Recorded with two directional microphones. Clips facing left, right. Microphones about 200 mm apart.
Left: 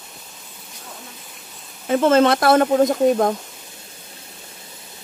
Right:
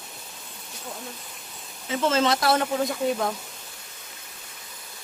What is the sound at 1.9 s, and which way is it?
Speech, 55° left (ahead or behind).